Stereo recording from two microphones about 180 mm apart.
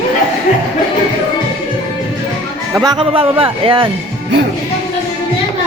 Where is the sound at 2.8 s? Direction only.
25° right (ahead or behind).